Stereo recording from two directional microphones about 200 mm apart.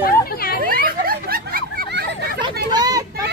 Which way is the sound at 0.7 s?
45° right (ahead or behind).